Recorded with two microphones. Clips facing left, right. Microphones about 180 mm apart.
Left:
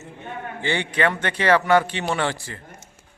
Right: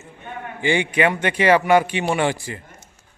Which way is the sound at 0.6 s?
10° right (ahead or behind).